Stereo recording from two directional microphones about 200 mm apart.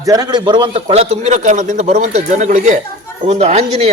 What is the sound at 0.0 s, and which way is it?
Speech, 20° right (ahead or behind).